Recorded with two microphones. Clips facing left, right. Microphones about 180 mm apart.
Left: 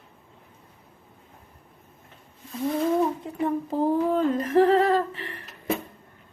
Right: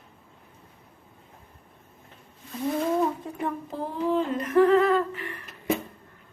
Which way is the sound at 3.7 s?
45° left (ahead or behind).